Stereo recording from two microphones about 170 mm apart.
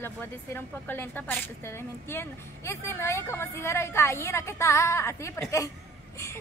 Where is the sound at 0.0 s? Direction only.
10° left (ahead or behind).